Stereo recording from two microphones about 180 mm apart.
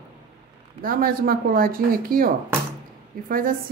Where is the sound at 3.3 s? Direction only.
50° right (ahead or behind).